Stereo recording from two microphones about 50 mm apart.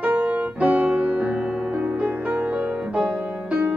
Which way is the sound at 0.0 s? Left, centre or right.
Right.